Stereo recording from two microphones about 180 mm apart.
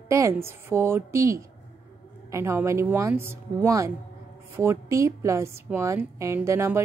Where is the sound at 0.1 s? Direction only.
15° right (ahead or behind).